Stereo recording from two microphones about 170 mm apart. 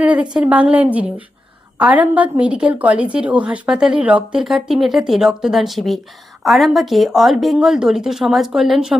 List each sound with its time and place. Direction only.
0.0 s a woman's voice: 5° right (ahead or behind)